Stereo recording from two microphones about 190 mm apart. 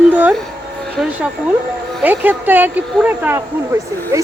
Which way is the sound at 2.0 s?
10° right (ahead or behind).